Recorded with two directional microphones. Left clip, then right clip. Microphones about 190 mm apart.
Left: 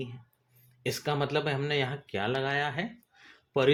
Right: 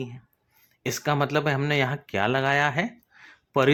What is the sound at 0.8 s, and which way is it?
Speech, 40° right (ahead or behind).